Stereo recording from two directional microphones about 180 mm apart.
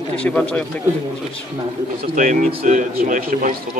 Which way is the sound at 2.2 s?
45° right (ahead or behind).